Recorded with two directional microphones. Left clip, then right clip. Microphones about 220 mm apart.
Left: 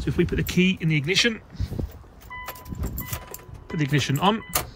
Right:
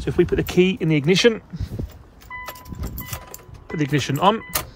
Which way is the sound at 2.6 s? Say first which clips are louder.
Right 1 dB; centre (ahead or behind).